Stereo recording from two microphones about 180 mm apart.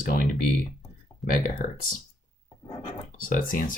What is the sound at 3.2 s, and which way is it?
Speech, 50° left (ahead or behind).